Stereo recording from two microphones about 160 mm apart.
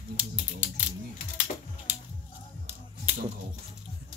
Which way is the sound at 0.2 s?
10° right (ahead or behind).